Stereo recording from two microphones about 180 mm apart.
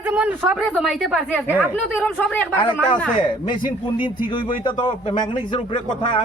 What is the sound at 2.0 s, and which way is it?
Speech, 10° left (ahead or behind).